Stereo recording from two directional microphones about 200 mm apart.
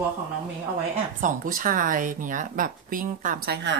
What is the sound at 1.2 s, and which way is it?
A woman's voice, 45° right (ahead or behind).